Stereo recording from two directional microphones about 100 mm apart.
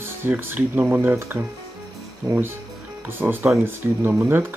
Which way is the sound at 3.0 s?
20° right (ahead or behind).